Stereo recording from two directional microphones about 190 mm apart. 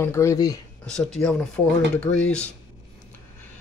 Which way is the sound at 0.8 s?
5° left (ahead or behind).